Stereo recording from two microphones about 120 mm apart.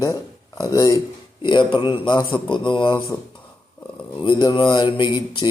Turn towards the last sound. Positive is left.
turn(degrees=40)  # may be behind; listen again after turning